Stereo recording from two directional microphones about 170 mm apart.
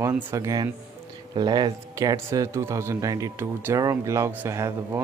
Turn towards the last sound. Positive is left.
turn(degrees=-15)  # may be behind; listen again after turning